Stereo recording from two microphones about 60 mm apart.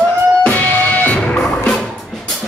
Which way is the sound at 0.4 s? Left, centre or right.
Left.